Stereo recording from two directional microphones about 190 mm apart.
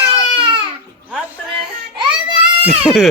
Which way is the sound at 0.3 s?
25° right (ahead or behind).